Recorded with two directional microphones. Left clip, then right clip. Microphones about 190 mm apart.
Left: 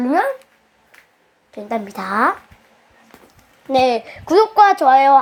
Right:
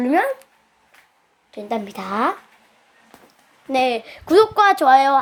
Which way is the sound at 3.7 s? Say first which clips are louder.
Left 4 dB; 5° right (ahead or behind).